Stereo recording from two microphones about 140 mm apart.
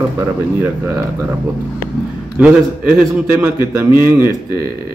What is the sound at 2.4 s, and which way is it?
A man's voice, 10° right (ahead or behind).